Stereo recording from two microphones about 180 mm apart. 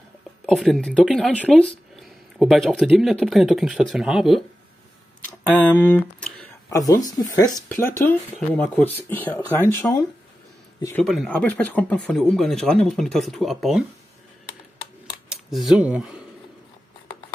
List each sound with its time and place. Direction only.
0.5 s speech: centre (ahead or behind)
5.6 s speech: 10° left (ahead or behind)
6.7 s speech: 20° left (ahead or behind); by 13.8 s centre (ahead or behind)
15.2 s speech: centre (ahead or behind)